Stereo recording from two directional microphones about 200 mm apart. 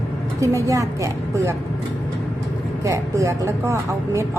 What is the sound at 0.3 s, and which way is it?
Speech, 15° right (ahead or behind).